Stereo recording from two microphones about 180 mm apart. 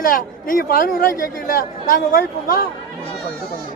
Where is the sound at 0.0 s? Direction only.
50° left (ahead or behind).